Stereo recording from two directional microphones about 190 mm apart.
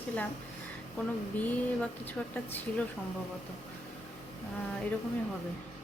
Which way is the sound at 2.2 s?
5° left (ahead or behind).